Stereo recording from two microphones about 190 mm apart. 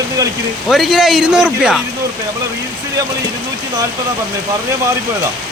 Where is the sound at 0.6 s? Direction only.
Centre (ahead or behind).